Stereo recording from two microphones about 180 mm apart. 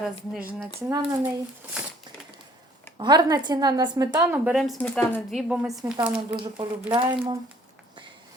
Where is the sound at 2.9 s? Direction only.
25° right (ahead or behind).